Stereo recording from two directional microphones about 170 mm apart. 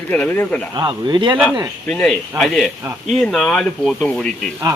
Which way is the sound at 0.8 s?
25° right (ahead or behind).